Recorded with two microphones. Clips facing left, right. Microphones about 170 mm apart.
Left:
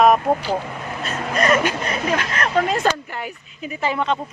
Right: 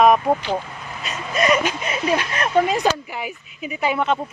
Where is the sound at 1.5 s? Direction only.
15° right (ahead or behind).